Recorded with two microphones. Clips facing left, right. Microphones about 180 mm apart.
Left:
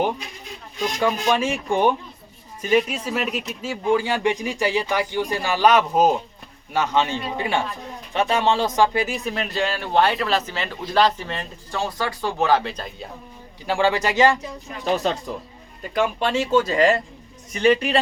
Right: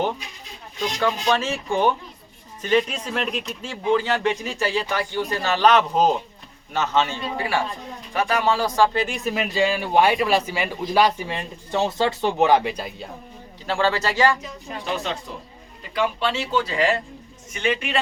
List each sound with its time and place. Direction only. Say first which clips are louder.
0.9 s speech: left 1 dB; 10° left (ahead or behind)
9.1 s a man's voice: right 2 dB; 5° right (ahead or behind)
13.7 s speech: left 2 dB; 15° left (ahead or behind)
16.0 s speech: left 2 dB; 45° left (ahead or behind)